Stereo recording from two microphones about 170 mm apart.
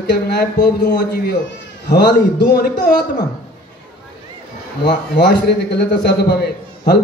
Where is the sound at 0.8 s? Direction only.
70° left (ahead or behind).